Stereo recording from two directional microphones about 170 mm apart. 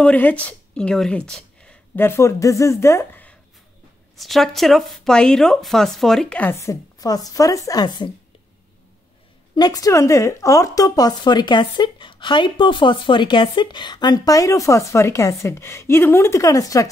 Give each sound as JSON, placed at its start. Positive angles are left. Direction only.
{"t": 0.0, "sound": "speech", "side_deg": 10}
{"t": 4.2, "sound": "speech", "side_deg": 0}
{"t": 9.6, "sound": "a woman's voice", "side_deg": 20}